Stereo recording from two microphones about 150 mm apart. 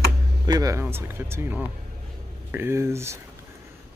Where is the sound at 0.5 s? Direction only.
25° right (ahead or behind).